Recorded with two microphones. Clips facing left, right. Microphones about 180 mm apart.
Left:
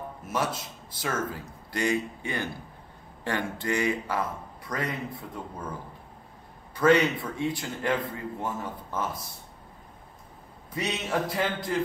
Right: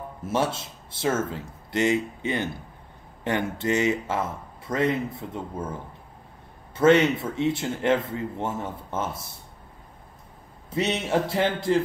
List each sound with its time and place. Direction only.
0.2 s a man's voice: 25° right (ahead or behind)
6.7 s a man's voice: 25° right (ahead or behind)
10.7 s a man's voice: 25° right (ahead or behind)